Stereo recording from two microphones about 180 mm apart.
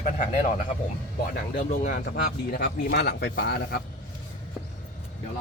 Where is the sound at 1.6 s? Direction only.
45° left (ahead or behind); by 3.8 s 60° left (ahead or behind).